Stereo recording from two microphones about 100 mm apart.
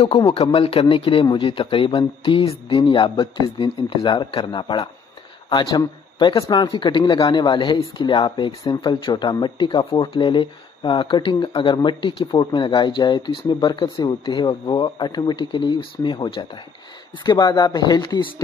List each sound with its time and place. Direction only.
0.0 s speech: 75° left (ahead or behind); by 4.8 s 50° left (ahead or behind)
6.1 s speech: 50° left (ahead or behind)